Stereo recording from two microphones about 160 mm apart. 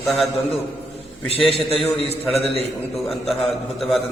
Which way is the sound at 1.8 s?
35° left (ahead or behind).